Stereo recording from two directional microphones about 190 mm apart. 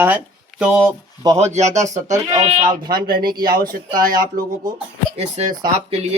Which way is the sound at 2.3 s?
20° right (ahead or behind).